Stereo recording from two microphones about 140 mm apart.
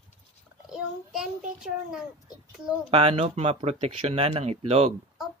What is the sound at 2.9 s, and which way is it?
Speech, 45° right (ahead or behind).